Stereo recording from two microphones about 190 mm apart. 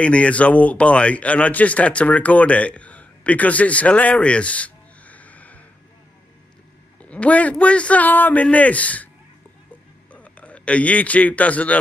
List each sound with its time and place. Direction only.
0.0 s speech: 5° left (ahead or behind)
7.0 s a man's voice: 5° left (ahead or behind)
10.1 s a man's voice: 5° left (ahead or behind)